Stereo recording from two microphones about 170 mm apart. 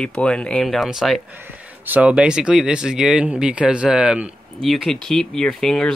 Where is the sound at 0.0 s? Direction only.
5° left (ahead or behind).